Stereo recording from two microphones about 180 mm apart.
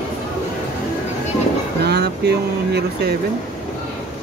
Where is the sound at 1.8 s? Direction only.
65° right (ahead or behind).